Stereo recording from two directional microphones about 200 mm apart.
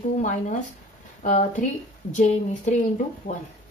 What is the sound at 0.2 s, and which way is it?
A woman's voice, 35° left (ahead or behind).